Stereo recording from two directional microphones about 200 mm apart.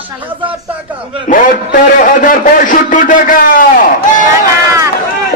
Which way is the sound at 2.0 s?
45° left (ahead or behind).